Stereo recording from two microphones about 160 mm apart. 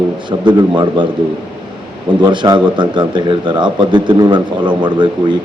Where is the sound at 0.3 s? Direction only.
30° right (ahead or behind).